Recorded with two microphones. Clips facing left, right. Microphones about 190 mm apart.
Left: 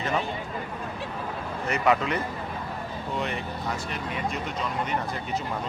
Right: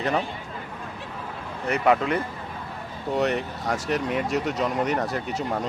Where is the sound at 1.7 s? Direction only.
55° right (ahead or behind).